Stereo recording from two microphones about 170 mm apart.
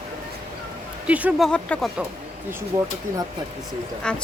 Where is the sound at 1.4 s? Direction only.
5° left (ahead or behind).